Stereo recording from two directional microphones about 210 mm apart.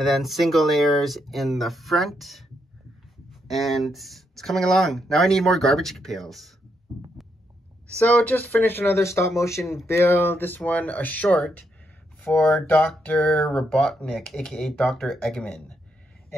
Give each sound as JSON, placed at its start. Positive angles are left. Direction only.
{"t": 0.0, "sound": "speech", "side_deg": 0}
{"t": 3.4, "sound": "speech", "side_deg": 0}
{"t": 8.0, "sound": "speech", "side_deg": 5}